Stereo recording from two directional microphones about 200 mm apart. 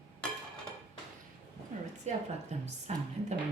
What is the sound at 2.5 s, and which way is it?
Speech, 35° right (ahead or behind).